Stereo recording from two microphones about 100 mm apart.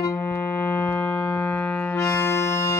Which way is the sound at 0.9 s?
30° left (ahead or behind).